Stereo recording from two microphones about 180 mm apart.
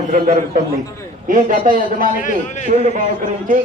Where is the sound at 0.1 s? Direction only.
45° right (ahead or behind).